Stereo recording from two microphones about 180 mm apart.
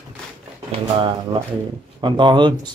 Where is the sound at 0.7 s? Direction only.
25° right (ahead or behind).